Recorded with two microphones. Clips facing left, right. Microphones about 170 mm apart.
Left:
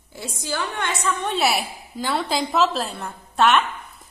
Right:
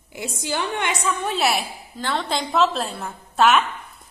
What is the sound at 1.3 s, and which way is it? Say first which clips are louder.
A woman's voice: left 1 dB; centre (ahead or behind).